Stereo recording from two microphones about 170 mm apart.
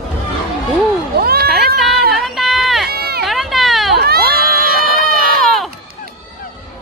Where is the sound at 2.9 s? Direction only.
70° right (ahead or behind).